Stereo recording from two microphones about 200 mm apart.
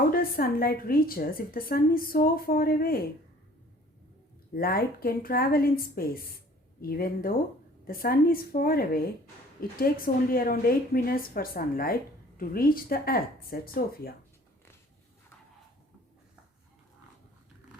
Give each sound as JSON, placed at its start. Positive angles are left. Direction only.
{"t": 0.1, "sound": "a woman's voice", "side_deg": 45}
{"t": 4.5, "sound": "a woman's voice", "side_deg": 45}